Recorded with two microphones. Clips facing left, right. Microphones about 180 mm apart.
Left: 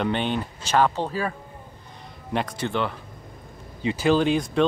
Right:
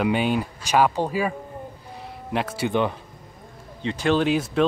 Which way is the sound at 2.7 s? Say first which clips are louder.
Right 6 dB; 15° right (ahead or behind).